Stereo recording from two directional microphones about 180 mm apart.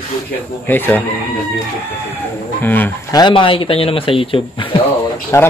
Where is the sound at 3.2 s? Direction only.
25° left (ahead or behind).